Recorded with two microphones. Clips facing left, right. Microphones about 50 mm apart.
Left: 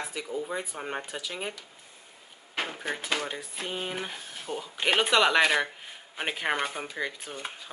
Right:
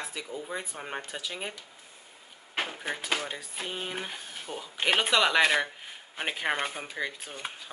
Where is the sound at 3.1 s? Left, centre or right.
Centre.